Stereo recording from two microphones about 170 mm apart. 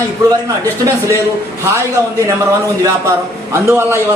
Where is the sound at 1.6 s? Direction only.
15° right (ahead or behind).